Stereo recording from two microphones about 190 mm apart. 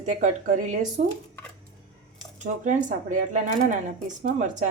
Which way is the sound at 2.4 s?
40° right (ahead or behind).